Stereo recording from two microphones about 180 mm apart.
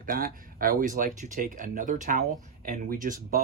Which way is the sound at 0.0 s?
50° right (ahead or behind).